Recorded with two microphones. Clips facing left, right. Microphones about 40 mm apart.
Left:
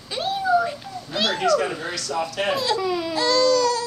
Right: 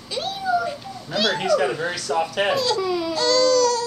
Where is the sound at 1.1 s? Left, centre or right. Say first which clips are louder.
Right 2 dB; centre.